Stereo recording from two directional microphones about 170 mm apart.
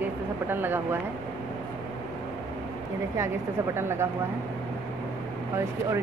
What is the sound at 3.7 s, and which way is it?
Speech, 15° right (ahead or behind).